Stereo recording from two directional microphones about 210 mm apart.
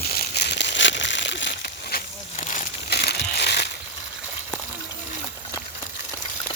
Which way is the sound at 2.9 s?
50° left (ahead or behind).